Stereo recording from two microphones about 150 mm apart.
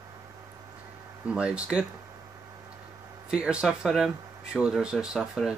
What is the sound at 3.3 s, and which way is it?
Speech, 5° right (ahead or behind).